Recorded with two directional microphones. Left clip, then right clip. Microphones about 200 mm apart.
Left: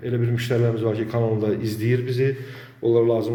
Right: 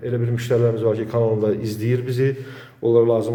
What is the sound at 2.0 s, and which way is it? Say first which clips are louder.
A man's voice: right 1 dB; 15° right (ahead or behind).